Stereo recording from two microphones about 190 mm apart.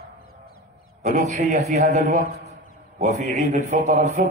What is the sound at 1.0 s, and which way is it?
A man's voice, 40° right (ahead or behind).